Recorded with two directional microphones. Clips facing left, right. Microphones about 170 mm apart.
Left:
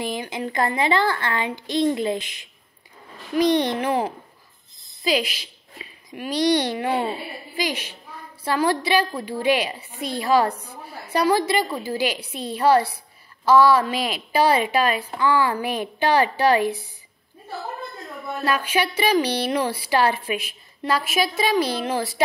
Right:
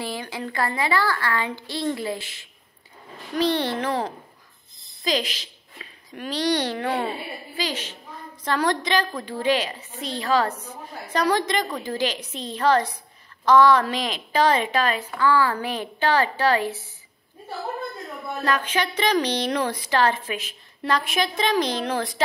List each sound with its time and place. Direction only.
0.0 s a woman's voice: 15° left (ahead or behind)
18.4 s a woman's voice: 10° left (ahead or behind)